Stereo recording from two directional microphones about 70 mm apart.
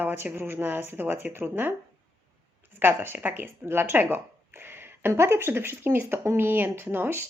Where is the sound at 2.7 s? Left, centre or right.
Right.